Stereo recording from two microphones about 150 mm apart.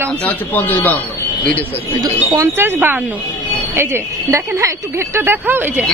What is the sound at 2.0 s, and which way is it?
Speech, 20° right (ahead or behind).